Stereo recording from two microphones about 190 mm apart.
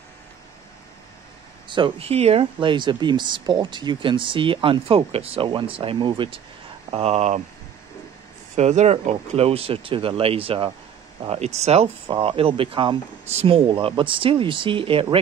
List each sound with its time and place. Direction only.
1.7 s speech: 30° right (ahead or behind)
8.5 s speech: 35° right (ahead or behind)